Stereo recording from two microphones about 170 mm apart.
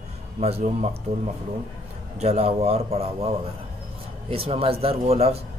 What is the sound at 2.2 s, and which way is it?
Speech, 40° right (ahead or behind).